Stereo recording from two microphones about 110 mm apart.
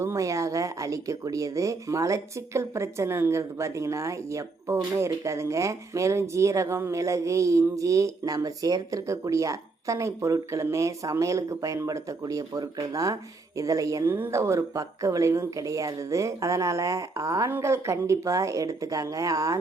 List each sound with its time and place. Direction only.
0.0 s speech: 25° right (ahead or behind)